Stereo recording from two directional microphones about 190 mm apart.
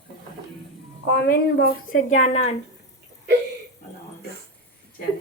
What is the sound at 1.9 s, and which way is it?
Speech, 40° left (ahead or behind).